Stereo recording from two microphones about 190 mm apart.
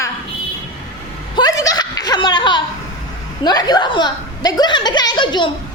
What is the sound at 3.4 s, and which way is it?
A woman's voice, 20° left (ahead or behind).